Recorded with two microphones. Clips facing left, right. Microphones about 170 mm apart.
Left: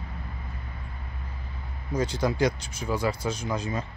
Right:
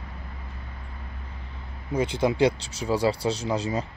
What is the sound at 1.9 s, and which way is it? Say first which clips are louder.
Speech: right 3 dB; 25° right (ahead or behind).